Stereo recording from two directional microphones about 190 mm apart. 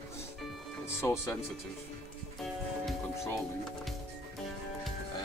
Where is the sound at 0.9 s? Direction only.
15° left (ahead or behind).